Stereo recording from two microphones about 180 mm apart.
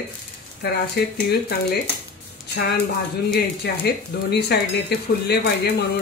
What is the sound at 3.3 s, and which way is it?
Speech, 60° left (ahead or behind).